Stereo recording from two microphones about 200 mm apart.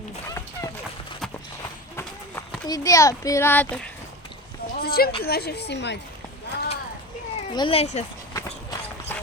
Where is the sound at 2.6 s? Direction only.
15° left (ahead or behind).